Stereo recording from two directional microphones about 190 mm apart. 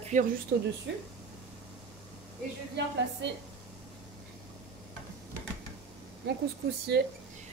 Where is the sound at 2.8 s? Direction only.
65° right (ahead or behind).